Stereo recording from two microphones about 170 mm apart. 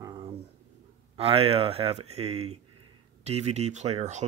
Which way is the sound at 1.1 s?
35° right (ahead or behind).